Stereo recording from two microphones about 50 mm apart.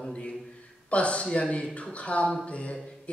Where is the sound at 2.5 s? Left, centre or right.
Left.